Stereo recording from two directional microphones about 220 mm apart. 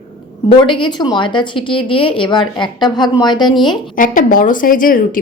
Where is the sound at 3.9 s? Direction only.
40° left (ahead or behind).